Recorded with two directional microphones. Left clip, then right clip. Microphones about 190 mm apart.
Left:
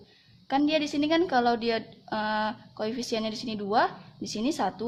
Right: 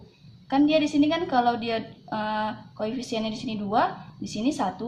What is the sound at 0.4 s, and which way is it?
A woman's voice, 50° left (ahead or behind).